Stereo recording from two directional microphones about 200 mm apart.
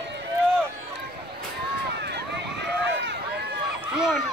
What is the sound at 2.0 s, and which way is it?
Run, 60° right (ahead or behind).